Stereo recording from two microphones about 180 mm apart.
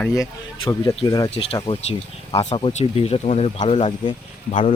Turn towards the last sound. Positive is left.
turn(degrees=35)  # may be behind; listen again after turning